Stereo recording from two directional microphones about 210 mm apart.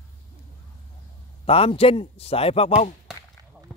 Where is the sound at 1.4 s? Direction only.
30° left (ahead or behind).